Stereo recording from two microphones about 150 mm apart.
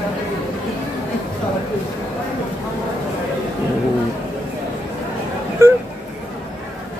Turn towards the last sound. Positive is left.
turn(degrees=-20)  # may be behind; listen again after turning